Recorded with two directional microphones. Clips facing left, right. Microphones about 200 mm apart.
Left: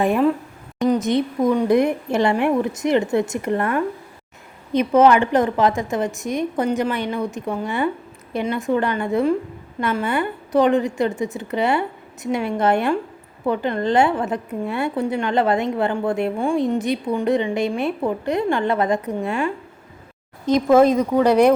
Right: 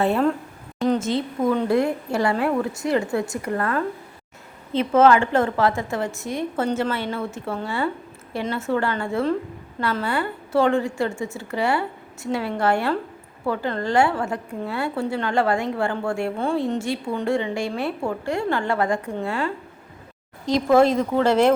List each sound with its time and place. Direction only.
0.0 s a woman's voice: 10° left (ahead or behind)
20.7 s a woman's voice: 15° left (ahead or behind)